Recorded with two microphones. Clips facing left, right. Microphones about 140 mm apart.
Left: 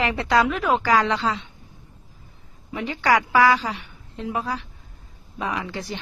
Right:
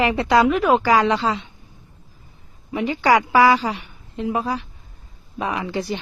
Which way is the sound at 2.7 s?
15° right (ahead or behind).